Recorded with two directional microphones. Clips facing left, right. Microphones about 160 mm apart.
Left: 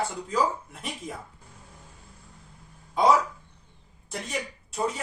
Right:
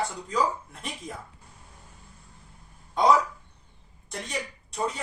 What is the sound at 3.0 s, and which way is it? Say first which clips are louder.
Speech: even; 5° left (ahead or behind).